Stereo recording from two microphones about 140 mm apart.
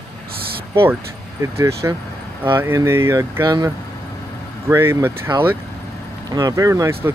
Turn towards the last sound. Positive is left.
turn(degrees=-20)  # may be behind; listen again after turning